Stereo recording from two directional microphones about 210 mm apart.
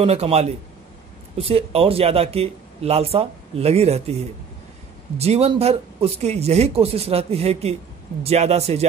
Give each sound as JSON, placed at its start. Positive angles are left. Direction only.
{"t": 0.0, "sound": "speech", "side_deg": -30}